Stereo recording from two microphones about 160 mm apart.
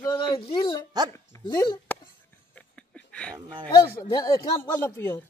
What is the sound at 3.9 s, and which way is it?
Speech, 20° left (ahead or behind).